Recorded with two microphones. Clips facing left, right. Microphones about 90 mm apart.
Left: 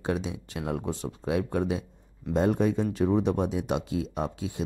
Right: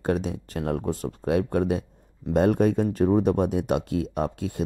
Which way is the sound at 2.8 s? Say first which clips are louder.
Right 4 dB; 45° right (ahead or behind).